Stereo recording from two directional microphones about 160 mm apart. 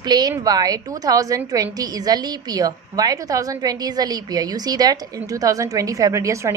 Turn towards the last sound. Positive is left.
turn(degrees=-20)  # may be behind; listen again after turning